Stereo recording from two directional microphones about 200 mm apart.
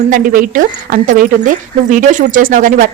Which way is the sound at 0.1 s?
45° right (ahead or behind).